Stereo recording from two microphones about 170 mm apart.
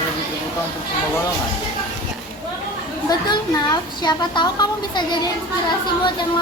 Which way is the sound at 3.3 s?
25° left (ahead or behind).